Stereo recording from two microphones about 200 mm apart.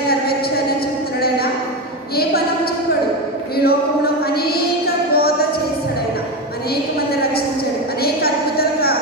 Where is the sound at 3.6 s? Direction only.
50° left (ahead or behind).